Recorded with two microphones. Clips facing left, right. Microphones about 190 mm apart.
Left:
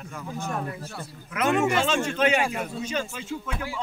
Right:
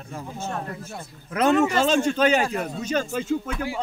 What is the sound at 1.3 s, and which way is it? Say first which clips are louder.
Speech: right 3 dB; 35° right (ahead or behind).